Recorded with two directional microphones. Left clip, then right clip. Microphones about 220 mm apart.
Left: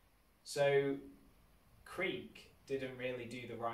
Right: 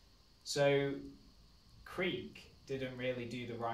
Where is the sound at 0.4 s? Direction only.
15° right (ahead or behind).